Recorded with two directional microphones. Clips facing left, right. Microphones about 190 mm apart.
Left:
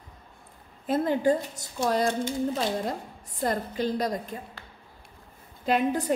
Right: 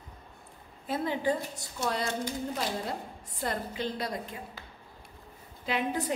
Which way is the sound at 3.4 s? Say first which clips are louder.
Left 6 dB; 40° left (ahead or behind).